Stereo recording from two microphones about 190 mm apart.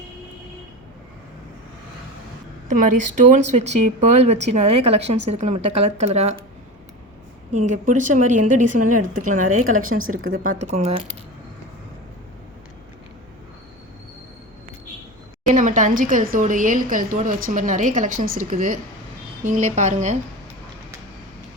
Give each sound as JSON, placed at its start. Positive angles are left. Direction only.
{"t": 2.6, "sound": "speech", "side_deg": -40}
{"t": 7.5, "sound": "speech", "side_deg": -40}
{"t": 9.8, "sound": "speech", "side_deg": -90}
{"t": 10.4, "sound": "speech", "side_deg": -40}
{"t": 15.4, "sound": "speech", "side_deg": -45}